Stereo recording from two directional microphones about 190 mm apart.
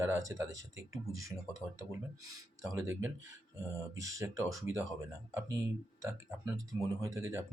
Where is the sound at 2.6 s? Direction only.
15° right (ahead or behind).